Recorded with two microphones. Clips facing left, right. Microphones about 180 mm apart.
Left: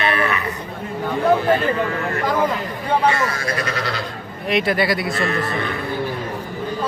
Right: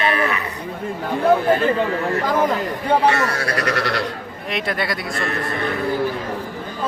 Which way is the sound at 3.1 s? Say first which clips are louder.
Right 1 dB; 70° right (ahead or behind).